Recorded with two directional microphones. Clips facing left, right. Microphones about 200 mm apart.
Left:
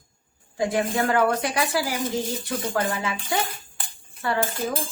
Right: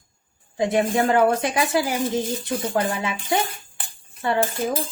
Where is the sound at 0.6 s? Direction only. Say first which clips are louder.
Right 3 dB; 20° right (ahead or behind).